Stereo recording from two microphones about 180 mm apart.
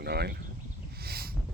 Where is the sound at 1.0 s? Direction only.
60° right (ahead or behind).